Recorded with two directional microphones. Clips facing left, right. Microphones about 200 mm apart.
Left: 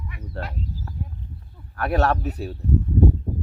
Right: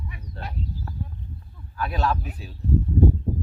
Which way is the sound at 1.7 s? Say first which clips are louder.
Left 4 dB; 70° left (ahead or behind).